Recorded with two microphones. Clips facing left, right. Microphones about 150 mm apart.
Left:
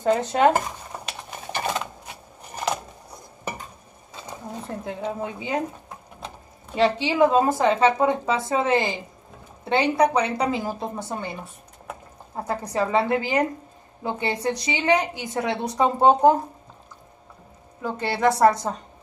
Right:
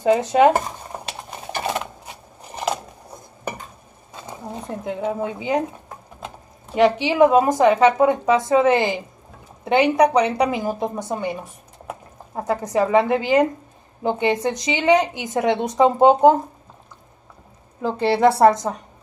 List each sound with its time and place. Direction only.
0.0 s speech: 10° right (ahead or behind)
4.6 s a woman's voice: 20° right (ahead or behind)
6.7 s speech: 15° right (ahead or behind)
12.4 s a woman's voice: 20° right (ahead or behind)
17.8 s a woman's voice: 25° right (ahead or behind)